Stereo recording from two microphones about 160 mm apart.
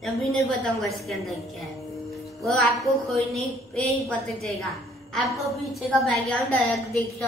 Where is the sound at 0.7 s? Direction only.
Centre (ahead or behind).